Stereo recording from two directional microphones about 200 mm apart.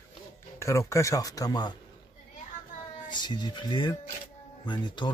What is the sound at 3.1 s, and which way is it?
Speech, 20° left (ahead or behind).